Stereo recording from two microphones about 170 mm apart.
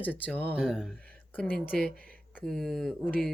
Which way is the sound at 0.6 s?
5° right (ahead or behind).